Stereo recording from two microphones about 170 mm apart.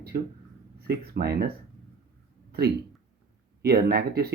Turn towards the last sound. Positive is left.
turn(degrees=-65)  # may be behind; listen again after turning